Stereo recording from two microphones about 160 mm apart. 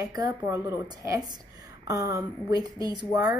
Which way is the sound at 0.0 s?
20° right (ahead or behind).